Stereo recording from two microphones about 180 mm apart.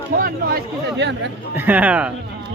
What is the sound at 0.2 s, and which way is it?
Speech, 55° right (ahead or behind).